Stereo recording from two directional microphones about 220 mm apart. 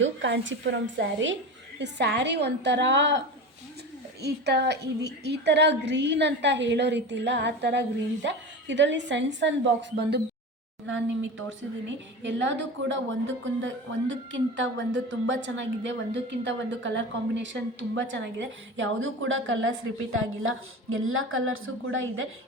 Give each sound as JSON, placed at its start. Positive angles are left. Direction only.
{"t": 0.0, "sound": "a woman's voice", "side_deg": -55}
{"t": 4.2, "sound": "a woman's voice", "side_deg": -50}
{"t": 10.8, "sound": "a woman's voice", "side_deg": -60}